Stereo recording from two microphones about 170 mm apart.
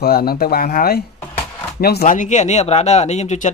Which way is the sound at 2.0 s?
45° left (ahead or behind).